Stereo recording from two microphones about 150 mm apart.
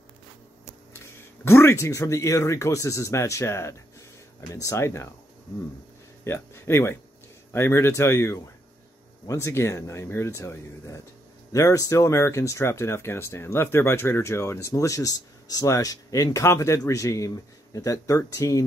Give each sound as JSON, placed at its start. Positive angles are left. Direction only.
{"t": 1.0, "sound": "speech", "side_deg": 15}
{"t": 6.2, "sound": "speech", "side_deg": 15}